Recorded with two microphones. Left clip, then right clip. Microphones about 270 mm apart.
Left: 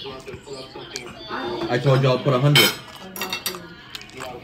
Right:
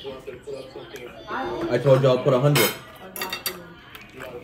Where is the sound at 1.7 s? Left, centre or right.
Centre.